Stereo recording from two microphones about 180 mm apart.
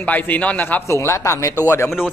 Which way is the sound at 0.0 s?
10° left (ahead or behind).